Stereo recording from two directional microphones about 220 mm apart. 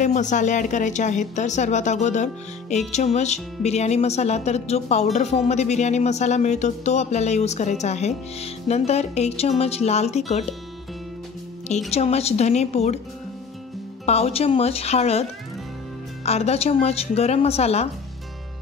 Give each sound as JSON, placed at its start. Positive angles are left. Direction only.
{"t": 0.0, "sound": "speech", "side_deg": 35}
{"t": 11.9, "sound": "speech", "side_deg": 30}
{"t": 14.0, "sound": "speech", "side_deg": 30}
{"t": 16.3, "sound": "speech", "side_deg": 30}